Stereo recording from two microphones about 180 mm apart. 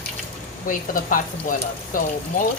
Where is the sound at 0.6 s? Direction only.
50° left (ahead or behind).